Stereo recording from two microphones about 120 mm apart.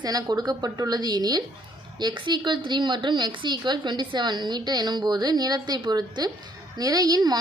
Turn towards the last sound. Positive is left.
turn(degrees=-35)  # may be behind; listen again after turning